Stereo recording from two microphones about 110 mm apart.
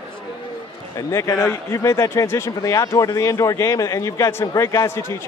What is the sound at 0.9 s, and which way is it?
A man's voice, 25° left (ahead or behind).